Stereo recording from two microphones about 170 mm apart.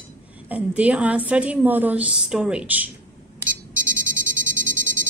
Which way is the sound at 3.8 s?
50° right (ahead or behind).